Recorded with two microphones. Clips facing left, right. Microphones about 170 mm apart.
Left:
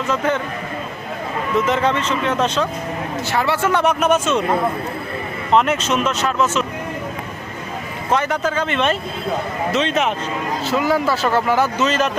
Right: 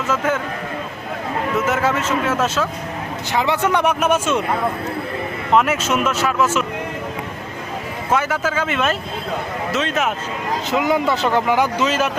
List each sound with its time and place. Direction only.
0.1 s speech: 5° right (ahead or behind)
1.5 s speech: 5° right (ahead or behind)
3.3 s speech: 20° right (ahead or behind)
5.5 s speech: 5° right (ahead or behind)
8.1 s speech: 5° right (ahead or behind)
10.7 s speech: 20° right (ahead or behind)